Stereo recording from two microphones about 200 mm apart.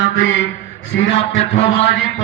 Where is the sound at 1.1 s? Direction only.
30° left (ahead or behind).